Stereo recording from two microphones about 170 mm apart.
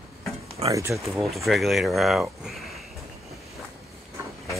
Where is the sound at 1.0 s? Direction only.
Centre (ahead or behind).